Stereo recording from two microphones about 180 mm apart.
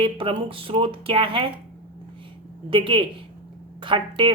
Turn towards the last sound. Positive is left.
turn(degrees=-25)  # may be behind; listen again after turning